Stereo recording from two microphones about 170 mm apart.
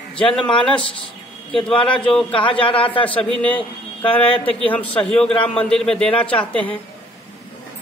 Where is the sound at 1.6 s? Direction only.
30° left (ahead or behind).